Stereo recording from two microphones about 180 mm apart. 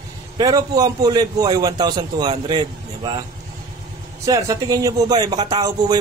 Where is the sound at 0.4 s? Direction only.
20° right (ahead or behind).